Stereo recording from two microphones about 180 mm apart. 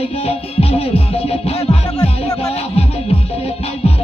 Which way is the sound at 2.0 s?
20° left (ahead or behind).